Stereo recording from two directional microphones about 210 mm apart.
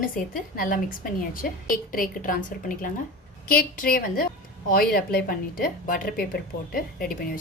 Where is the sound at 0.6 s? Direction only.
40° left (ahead or behind).